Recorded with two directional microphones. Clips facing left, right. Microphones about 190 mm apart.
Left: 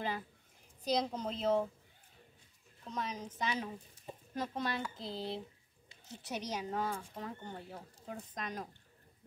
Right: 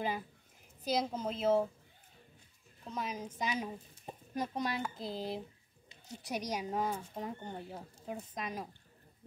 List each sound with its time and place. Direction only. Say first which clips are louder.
0.8 s a woman's voice: even; 5° right (ahead or behind)
2.8 s a woman's voice: right 1 dB; 10° right (ahead or behind)
8.4 s a woman's voice: even; 5° right (ahead or behind)